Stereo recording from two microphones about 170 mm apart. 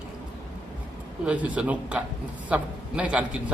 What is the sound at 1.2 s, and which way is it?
A man's voice, 10° right (ahead or behind).